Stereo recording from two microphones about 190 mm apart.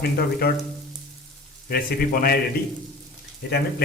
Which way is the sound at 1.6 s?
50° left (ahead or behind).